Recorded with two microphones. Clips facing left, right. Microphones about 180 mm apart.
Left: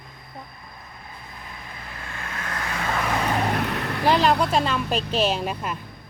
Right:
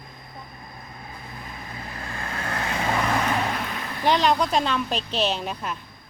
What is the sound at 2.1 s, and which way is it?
Vehicle, 30° right (ahead or behind).